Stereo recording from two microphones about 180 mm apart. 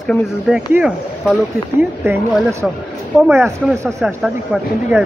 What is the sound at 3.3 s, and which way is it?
Speech, 15° right (ahead or behind).